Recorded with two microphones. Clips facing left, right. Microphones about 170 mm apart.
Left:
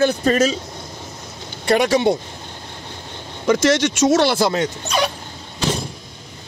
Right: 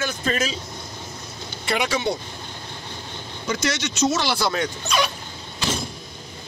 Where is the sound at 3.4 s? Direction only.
90° left.